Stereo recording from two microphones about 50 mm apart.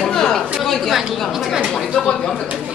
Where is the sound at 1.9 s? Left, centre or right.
Centre.